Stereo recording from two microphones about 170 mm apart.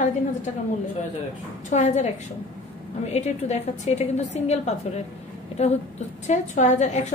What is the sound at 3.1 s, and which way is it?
A woman's voice, 40° left (ahead or behind).